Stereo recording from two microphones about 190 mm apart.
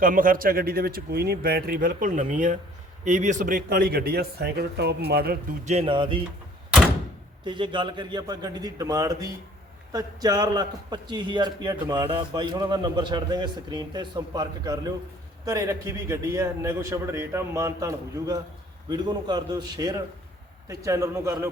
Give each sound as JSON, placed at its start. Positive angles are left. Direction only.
{"t": 0.0, "sound": "speech", "side_deg": -45}
{"t": 5.6, "sound": "a man's voice", "side_deg": -30}
{"t": 7.4, "sound": "a man's voice", "side_deg": -25}